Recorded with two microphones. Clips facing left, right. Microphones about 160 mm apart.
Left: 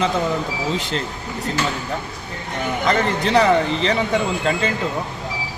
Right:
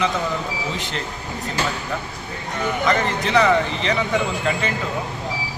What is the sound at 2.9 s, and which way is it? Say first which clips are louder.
Speech: left 3 dB; 35° left (ahead or behind).